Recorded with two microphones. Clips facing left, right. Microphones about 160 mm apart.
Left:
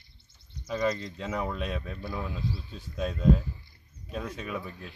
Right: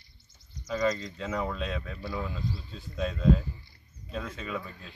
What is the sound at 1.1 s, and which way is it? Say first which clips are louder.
Speech: even; 15° left (ahead or behind).